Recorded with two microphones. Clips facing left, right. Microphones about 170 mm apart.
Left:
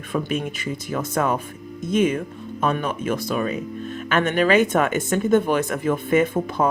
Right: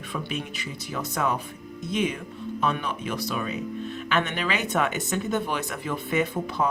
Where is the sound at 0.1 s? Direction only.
45° left (ahead or behind).